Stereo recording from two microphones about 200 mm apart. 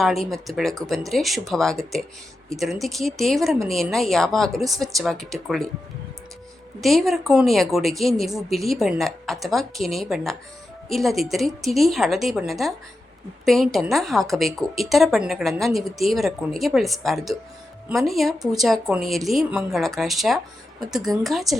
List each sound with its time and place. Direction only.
0.0 s a woman's voice: centre (ahead or behind)
6.8 s a woman's voice: centre (ahead or behind)